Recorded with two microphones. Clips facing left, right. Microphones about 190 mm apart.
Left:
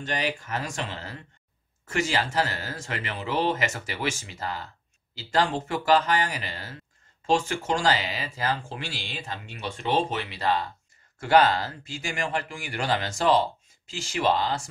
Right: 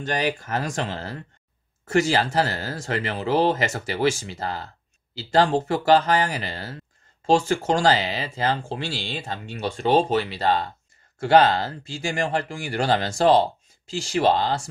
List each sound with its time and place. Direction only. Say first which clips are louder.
0.0 s speech: right 4 dB; 40° right (ahead or behind)